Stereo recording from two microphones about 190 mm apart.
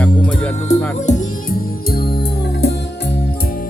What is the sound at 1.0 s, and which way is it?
Music, 45° left (ahead or behind).